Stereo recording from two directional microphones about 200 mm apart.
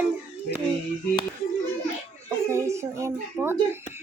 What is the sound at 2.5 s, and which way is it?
A child's voice, 15° right (ahead or behind).